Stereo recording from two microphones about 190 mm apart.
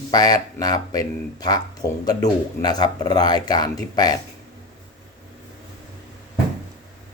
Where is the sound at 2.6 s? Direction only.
20° left (ahead or behind).